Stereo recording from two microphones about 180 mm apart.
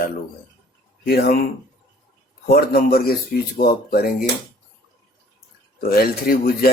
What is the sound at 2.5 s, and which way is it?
Speech, 55° left (ahead or behind).